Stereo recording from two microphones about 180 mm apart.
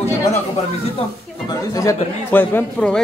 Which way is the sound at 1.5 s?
20° left (ahead or behind).